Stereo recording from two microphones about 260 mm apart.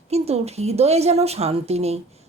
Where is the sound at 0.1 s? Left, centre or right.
Right.